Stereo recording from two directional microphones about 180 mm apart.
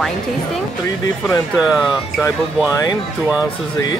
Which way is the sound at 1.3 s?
20° left (ahead or behind).